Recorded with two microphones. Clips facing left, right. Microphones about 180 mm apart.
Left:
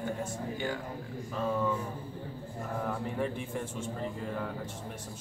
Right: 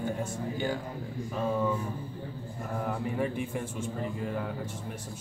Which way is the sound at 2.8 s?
10° right (ahead or behind).